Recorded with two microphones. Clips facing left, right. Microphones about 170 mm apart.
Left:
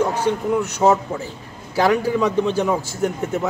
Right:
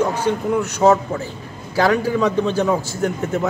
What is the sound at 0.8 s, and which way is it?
A man's voice, 5° left (ahead or behind).